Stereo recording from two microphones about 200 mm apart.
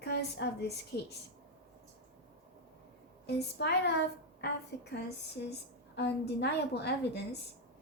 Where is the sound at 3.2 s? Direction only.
55° left (ahead or behind).